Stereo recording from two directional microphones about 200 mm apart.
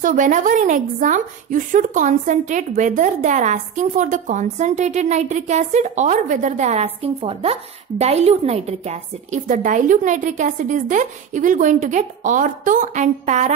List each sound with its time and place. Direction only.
0.0 s speech: 40° right (ahead or behind)